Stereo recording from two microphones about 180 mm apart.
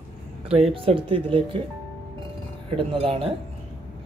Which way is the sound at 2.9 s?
30° right (ahead or behind).